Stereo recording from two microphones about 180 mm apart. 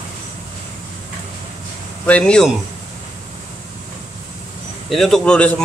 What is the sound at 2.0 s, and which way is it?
Speech, 5° left (ahead or behind).